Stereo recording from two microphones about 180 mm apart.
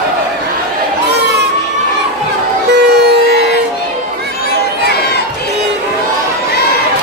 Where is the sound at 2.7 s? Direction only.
65° right (ahead or behind).